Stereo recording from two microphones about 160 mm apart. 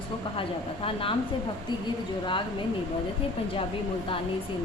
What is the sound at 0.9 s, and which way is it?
Speech, 35° left (ahead or behind).